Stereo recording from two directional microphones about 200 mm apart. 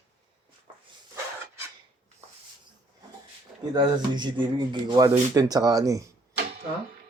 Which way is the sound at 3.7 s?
20° right (ahead or behind).